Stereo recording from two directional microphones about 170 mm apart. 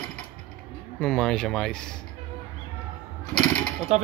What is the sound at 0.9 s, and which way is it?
Speech, 5° left (ahead or behind).